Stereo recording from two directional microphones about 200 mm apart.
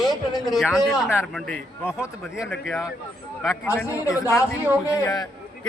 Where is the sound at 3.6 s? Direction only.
10° left (ahead or behind).